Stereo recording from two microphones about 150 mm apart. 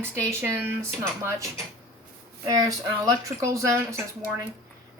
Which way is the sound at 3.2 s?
20° right (ahead or behind).